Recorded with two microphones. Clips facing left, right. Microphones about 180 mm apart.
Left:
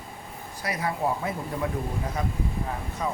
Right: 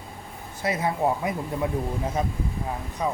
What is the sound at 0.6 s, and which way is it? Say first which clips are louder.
A man's voice: right 4 dB; 25° right (ahead or behind).